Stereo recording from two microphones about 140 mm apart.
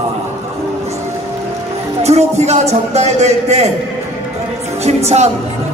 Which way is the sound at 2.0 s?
50° right (ahead or behind).